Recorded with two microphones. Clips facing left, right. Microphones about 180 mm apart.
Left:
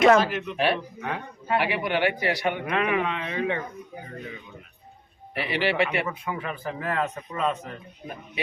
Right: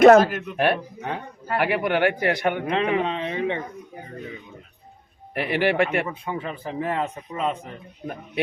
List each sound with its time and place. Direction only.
0.0 s a man's voice: 45° right (ahead or behind)
2.6 s speech: 30° right (ahead or behind)
5.3 s a man's voice: 50° right (ahead or behind)
6.1 s speech: 30° right (ahead or behind)